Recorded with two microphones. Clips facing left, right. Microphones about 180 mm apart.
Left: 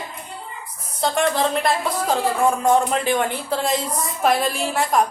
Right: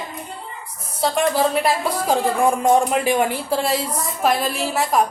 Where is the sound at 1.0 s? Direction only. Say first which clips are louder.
Right 1 dB; 5° right (ahead or behind).